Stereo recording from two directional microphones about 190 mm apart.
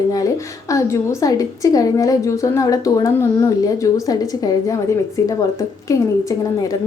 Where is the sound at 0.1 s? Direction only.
15° left (ahead or behind).